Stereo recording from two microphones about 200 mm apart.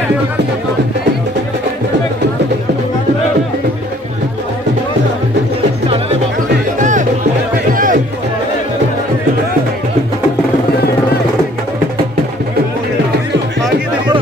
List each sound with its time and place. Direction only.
6.8 s music: 40° right (ahead or behind)